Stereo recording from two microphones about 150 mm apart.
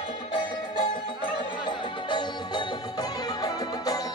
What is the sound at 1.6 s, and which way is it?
Music, 30° left (ahead or behind).